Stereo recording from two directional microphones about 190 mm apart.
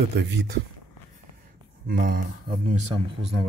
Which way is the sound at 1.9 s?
50° right (ahead or behind).